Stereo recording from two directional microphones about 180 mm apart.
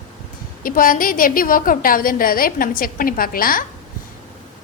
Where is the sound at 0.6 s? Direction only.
50° left (ahead or behind).